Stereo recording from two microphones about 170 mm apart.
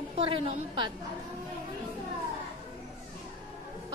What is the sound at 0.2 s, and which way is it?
Speech, 30° right (ahead or behind).